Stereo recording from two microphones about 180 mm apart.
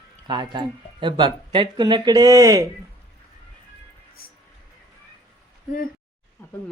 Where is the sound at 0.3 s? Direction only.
25° right (ahead or behind).